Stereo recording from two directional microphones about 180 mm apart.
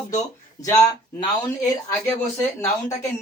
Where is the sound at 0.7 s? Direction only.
20° left (ahead or behind).